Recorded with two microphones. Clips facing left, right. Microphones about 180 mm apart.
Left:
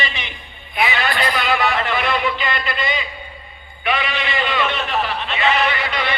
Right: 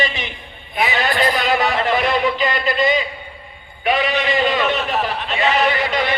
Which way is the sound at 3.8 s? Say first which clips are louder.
Right 4 dB; 40° right (ahead or behind).